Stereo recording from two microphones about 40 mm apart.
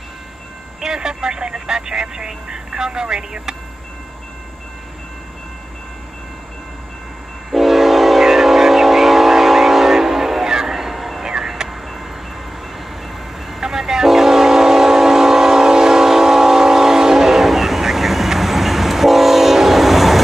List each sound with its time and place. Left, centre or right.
0.7 s vehicle: centre
7.5 s train: centre
11.2 s vehicle: centre
13.5 s train: centre